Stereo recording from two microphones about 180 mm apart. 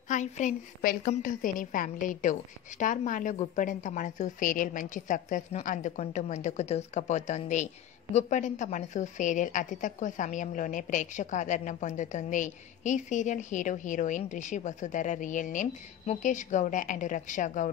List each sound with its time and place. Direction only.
0.1 s a woman's voice: 45° left (ahead or behind)